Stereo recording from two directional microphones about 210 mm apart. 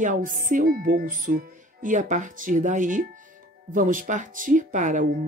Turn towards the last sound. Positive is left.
turn(degrees=-35)  # may be behind; listen again after turning